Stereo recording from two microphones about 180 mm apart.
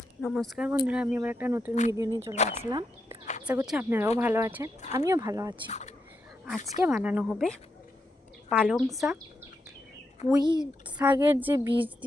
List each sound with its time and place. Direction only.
0.2 s speech: centre (ahead or behind); by 2.3 s 15° right (ahead or behind)
2.3 s speech: 40° left (ahead or behind)
2.6 s speech: 20° right (ahead or behind)
6.8 s speech: 10° right (ahead or behind)
10.3 s speech: 25° right (ahead or behind)
11.0 s speech: 10° right (ahead or behind)